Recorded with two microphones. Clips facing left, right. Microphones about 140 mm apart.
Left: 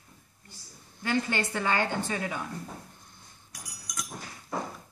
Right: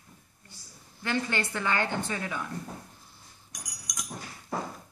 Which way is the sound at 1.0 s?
20° left (ahead or behind).